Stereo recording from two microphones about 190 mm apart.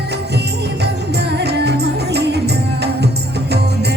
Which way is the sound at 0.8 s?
60° right (ahead or behind).